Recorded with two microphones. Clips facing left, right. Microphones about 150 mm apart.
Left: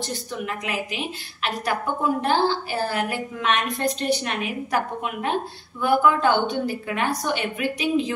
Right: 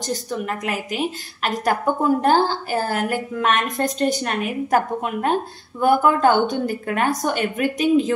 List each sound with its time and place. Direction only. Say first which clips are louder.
0.0 s a woman's voice: right 4 dB; 40° right (ahead or behind)